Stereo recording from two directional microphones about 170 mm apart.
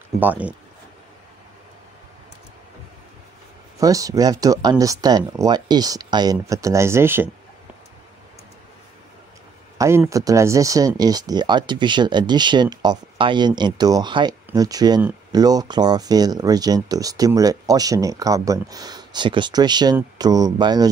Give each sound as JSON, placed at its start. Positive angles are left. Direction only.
{"t": 0.2, "sound": "speech", "side_deg": -10}
{"t": 3.8, "sound": "speech", "side_deg": -20}
{"t": 9.8, "sound": "speech", "side_deg": -15}